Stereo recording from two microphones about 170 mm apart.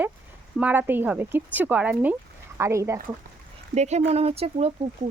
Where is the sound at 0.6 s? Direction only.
10° right (ahead or behind).